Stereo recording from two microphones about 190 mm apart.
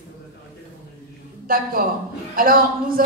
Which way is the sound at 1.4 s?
50° right (ahead or behind).